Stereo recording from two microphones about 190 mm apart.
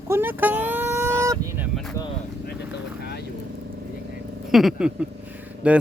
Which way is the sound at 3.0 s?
60° left (ahead or behind).